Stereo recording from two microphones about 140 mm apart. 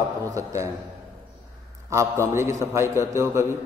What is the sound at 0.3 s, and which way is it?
Speech, 20° right (ahead or behind).